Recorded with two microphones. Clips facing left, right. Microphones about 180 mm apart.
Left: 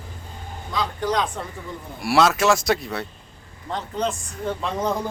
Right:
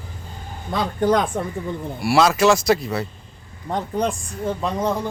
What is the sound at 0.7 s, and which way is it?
Speech, 55° right (ahead or behind).